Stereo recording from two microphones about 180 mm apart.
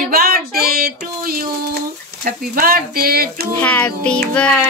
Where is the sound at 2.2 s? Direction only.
55° right (ahead or behind).